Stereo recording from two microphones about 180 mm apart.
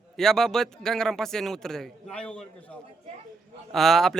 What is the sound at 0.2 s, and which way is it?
A man's voice, centre (ahead or behind).